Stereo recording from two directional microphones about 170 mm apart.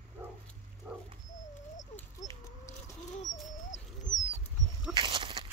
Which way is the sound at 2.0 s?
20° left (ahead or behind).